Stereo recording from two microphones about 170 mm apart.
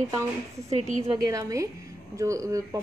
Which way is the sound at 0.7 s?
45° right (ahead or behind).